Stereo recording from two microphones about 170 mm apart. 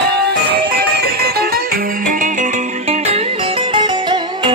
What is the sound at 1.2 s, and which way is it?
Music, 65° right (ahead or behind).